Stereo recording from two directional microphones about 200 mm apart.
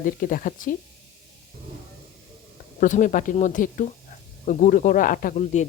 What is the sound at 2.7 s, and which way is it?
Speech, 40° left (ahead or behind).